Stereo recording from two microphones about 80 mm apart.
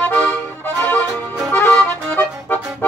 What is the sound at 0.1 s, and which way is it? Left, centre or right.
Accordion, centre.